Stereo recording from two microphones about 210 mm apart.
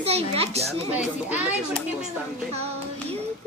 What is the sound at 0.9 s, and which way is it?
Speech, 10° right (ahead or behind).